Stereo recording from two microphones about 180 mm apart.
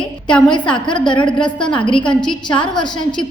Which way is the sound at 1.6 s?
25° left (ahead or behind).